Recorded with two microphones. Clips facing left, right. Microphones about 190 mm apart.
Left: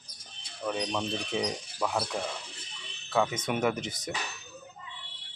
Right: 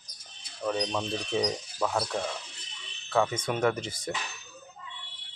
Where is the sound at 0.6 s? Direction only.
5° left (ahead or behind).